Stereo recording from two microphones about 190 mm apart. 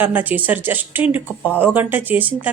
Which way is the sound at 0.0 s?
10° right (ahead or behind).